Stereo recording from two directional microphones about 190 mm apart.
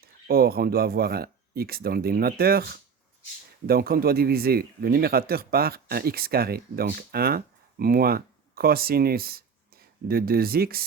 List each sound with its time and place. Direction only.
0.0 s speech: 50° right (ahead or behind)